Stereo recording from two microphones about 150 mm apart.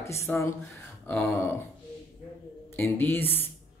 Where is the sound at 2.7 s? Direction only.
15° left (ahead or behind).